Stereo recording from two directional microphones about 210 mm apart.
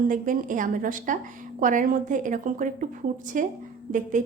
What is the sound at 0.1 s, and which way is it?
A woman's voice, 40° right (ahead or behind).